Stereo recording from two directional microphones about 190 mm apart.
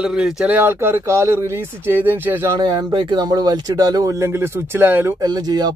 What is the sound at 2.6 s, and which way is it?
Speech, 25° right (ahead or behind).